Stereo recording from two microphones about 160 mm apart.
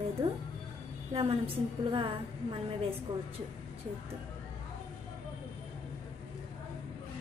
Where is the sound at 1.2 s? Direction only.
35° right (ahead or behind).